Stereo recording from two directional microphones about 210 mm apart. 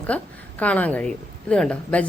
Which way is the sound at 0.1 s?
5° left (ahead or behind).